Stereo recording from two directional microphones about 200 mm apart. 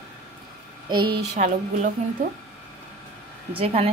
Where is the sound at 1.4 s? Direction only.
35° right (ahead or behind).